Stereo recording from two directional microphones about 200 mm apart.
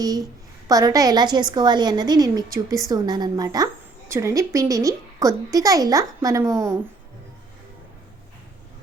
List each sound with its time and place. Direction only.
0.0 s a child's voice: 20° right (ahead or behind)